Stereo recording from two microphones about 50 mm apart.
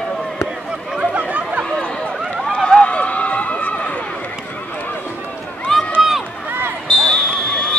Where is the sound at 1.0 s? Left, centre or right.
Right.